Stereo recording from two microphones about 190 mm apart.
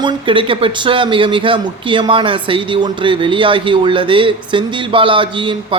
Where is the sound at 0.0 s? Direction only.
25° right (ahead or behind).